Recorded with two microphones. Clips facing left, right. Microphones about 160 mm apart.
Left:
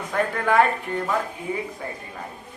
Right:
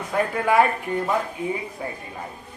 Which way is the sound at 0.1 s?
10° right (ahead or behind).